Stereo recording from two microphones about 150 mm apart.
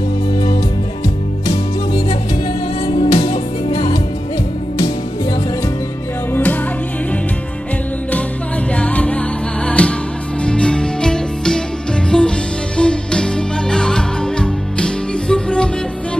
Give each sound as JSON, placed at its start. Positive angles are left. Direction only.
{"t": 2.9, "sound": "music", "side_deg": 50}
{"t": 6.3, "sound": "music", "side_deg": 10}
{"t": 8.7, "sound": "music", "side_deg": 10}